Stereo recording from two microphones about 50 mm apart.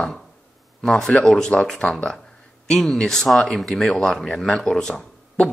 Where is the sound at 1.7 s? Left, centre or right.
Centre.